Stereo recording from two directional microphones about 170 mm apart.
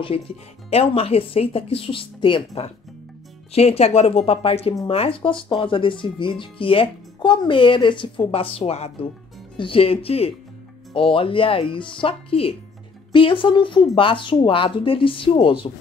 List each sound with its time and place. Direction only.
0.7 s speech: 35° left (ahead or behind)